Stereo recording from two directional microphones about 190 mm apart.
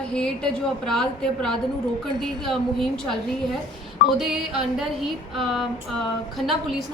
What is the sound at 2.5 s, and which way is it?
Speech, centre (ahead or behind).